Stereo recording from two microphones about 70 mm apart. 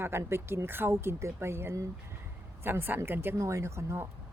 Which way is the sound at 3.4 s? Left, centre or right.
Right.